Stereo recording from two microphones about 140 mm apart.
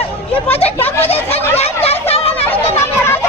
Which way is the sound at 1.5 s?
45° left (ahead or behind).